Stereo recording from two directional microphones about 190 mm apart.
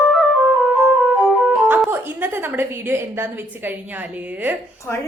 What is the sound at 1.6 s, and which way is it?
A woman's voice, 10° right (ahead or behind).